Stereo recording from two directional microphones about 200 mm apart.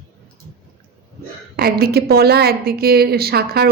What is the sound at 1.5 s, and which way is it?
A woman's voice, 50° right (ahead or behind).